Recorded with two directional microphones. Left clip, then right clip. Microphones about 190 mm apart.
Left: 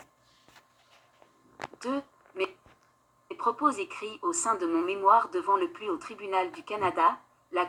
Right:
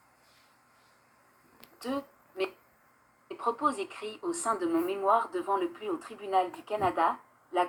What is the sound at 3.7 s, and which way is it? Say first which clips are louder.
Speech: left 2 dB; 35° left (ahead or behind).